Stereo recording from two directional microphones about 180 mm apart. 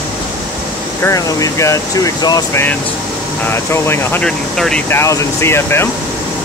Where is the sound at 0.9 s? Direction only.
15° left (ahead or behind).